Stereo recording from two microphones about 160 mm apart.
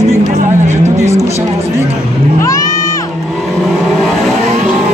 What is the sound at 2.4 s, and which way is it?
Music, 20° left (ahead or behind).